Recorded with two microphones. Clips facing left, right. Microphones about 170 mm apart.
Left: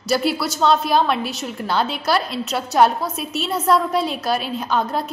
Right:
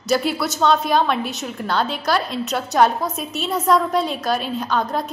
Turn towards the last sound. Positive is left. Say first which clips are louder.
# even
turn(degrees=5)  # may be behind; listen again after turning